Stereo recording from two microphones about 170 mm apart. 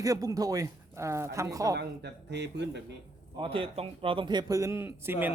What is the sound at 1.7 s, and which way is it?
Speech, 80° right.